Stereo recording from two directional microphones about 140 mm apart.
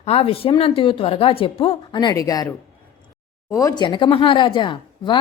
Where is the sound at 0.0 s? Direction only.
45° left (ahead or behind).